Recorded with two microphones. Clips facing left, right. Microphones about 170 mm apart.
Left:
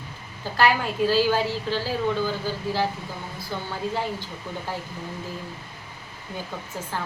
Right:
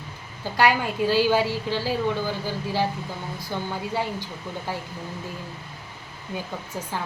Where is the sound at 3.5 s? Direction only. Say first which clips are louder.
Right 2 dB; 20° right (ahead or behind).